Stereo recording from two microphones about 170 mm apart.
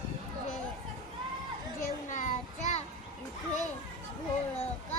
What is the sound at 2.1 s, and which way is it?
Child singing, 50° left (ahead or behind).